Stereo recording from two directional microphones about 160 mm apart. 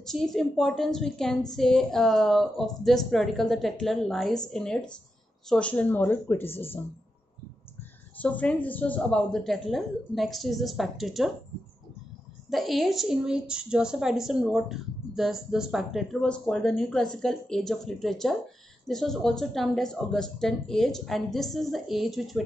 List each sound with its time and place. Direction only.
0.0 s a woman's voice: centre (ahead or behind)
8.2 s a woman's voice: 10° left (ahead or behind)
12.4 s a woman's voice: centre (ahead or behind)